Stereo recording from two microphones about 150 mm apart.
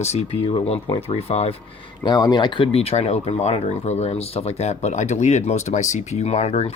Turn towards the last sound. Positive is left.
turn(degrees=45)  # may be behind; listen again after turning